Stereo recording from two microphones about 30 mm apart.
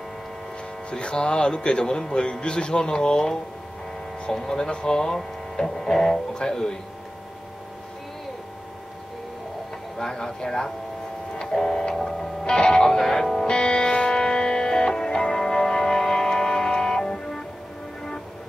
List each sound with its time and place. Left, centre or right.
0.8 s speech: left; by 6.8 s centre
9.9 s speech: centre
11.9 s music: centre
12.5 s speech: left
12.8 s speech: centre
13.5 s music: left